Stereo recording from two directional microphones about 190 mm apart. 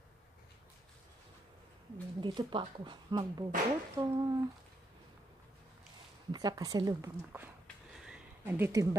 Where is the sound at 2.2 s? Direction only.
25° right (ahead or behind).